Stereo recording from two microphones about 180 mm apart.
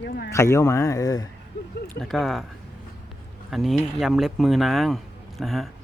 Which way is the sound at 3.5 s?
Centre (ahead or behind).